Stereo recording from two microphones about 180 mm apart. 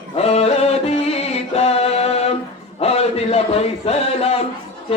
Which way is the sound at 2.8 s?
35° left (ahead or behind).